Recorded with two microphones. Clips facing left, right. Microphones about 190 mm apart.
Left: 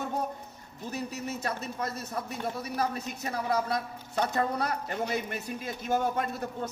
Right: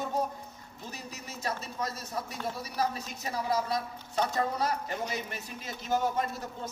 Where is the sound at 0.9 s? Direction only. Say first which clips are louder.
Left 10 dB; 55° left (ahead or behind).